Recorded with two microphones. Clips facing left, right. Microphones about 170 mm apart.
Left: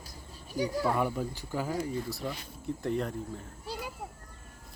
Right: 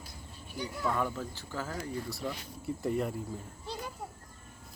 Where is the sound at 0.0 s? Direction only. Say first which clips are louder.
Left 1 dB; 40° left (ahead or behind).